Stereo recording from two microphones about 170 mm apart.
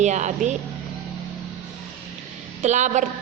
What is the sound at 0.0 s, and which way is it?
Speech, 45° right (ahead or behind).